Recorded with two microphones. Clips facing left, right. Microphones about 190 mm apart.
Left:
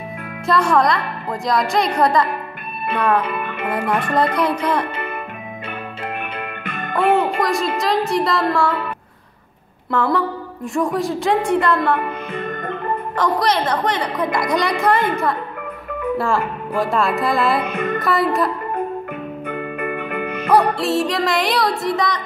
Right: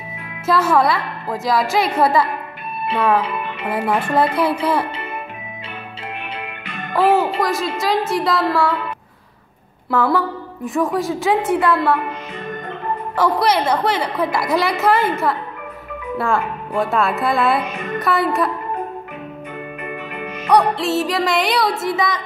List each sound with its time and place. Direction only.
0.5 s a woman's voice: 5° right (ahead or behind)
3.2 s music: 55° left (ahead or behind)
3.7 s a woman's voice: 5° right (ahead or behind)
6.3 s music: 50° left (ahead or behind)
6.9 s a woman's voice: 5° right (ahead or behind)
9.8 s a woman's voice: centre (ahead or behind)
13.1 s a woman's voice: 10° right (ahead or behind)
19.4 s music: 55° left (ahead or behind)
20.4 s a woman's voice: centre (ahead or behind)